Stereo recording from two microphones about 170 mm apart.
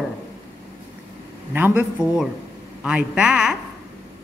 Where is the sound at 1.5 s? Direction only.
10° right (ahead or behind).